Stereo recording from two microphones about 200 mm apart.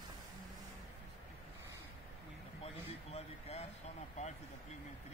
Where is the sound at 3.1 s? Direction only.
30° left (ahead or behind).